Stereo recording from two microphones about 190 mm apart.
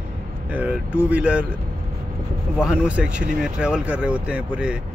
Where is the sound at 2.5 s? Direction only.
5° right (ahead or behind).